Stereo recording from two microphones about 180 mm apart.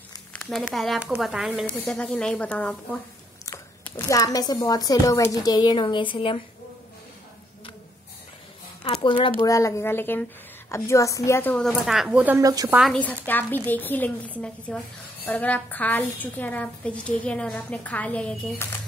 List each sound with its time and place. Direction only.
0.3 s a woman's voice: centre (ahead or behind)
1.7 s a woman's voice: 5° left (ahead or behind); by 6.4 s 30° left (ahead or behind)
9.0 s a woman's voice: 25° left (ahead or behind)
9.4 s a woman's voice: 15° left (ahead or behind); by 12.7 s 20° right (ahead or behind)
12.7 s a woman's voice: centre (ahead or behind)